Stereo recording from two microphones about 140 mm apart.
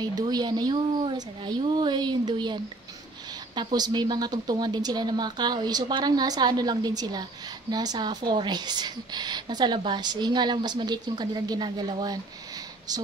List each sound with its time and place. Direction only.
0.0 s speech: 30° right (ahead or behind)